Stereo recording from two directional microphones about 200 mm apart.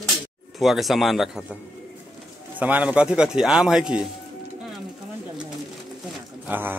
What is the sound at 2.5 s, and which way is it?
A man's voice, 10° right (ahead or behind).